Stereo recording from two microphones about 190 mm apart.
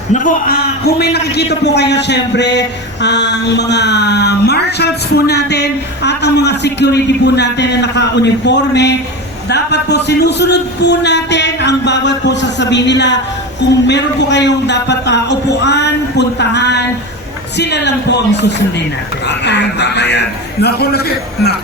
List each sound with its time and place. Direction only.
0.1 s a man's voice: 45° left (ahead or behind)